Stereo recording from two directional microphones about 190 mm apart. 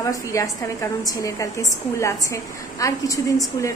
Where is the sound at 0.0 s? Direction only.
15° left (ahead or behind).